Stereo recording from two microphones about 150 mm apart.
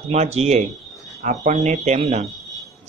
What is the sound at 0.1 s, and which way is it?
Speech, 45° right (ahead or behind).